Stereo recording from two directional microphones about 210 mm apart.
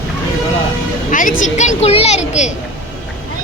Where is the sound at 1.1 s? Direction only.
40° left (ahead or behind).